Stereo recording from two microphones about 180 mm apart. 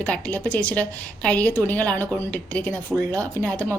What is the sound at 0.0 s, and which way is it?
A woman's voice, 10° left (ahead or behind).